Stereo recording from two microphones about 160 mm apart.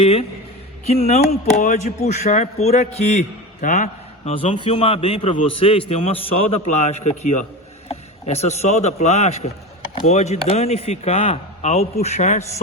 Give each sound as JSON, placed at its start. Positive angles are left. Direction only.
{"t": 0.0, "sound": "a man's voice", "side_deg": 40}
{"t": 4.5, "sound": "a man's voice", "side_deg": 35}